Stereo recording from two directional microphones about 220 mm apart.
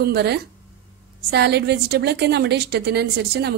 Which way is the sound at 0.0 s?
45° right (ahead or behind).